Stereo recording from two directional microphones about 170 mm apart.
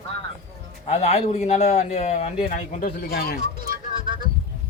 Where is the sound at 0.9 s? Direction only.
40° left (ahead or behind); by 3.3 s 65° left (ahead or behind).